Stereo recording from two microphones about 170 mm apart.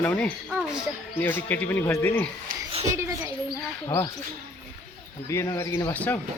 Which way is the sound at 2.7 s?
40° right (ahead or behind).